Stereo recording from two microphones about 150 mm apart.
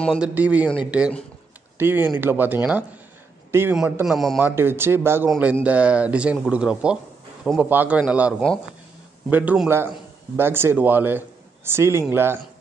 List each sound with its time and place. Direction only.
0.2 s speech: 10° right (ahead or behind)
4.0 s a man's voice: centre (ahead or behind)
4.4 s a man's voice: 15° right (ahead or behind)